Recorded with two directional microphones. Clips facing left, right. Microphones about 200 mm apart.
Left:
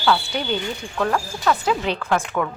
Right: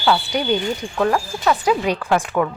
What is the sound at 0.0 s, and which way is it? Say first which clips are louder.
Speech: right 2 dB; 15° right (ahead or behind).